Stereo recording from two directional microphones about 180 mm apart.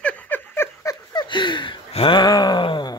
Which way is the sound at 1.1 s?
25° left (ahead or behind).